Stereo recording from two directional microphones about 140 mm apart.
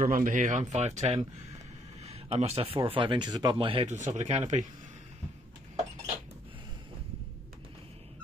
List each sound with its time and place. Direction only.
0.0 s speech: 75° right (ahead or behind); by 3.8 s 40° right (ahead or behind)
3.8 s speech: 55° right (ahead or behind)